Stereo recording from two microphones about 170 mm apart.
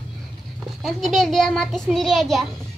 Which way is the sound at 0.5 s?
Centre (ahead or behind).